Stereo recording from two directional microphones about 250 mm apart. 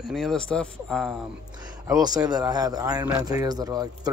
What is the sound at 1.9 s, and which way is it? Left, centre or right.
Speech, centre.